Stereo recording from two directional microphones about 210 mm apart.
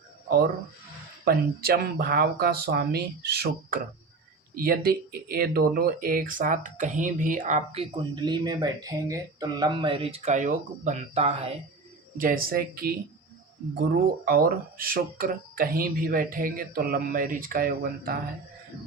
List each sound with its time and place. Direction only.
1.2 s speech: 45° right (ahead or behind); by 11.5 s 30° right (ahead or behind)
12.1 s speech: 40° right (ahead or behind)
14.3 s speech: 45° right (ahead or behind)